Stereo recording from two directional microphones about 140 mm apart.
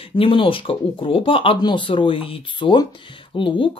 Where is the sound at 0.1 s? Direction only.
40° left (ahead or behind).